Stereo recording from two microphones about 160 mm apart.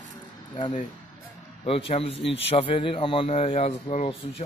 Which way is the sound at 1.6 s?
35° left (ahead or behind).